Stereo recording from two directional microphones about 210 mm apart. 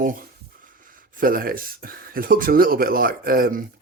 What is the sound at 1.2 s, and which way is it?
Speech, 40° right (ahead or behind).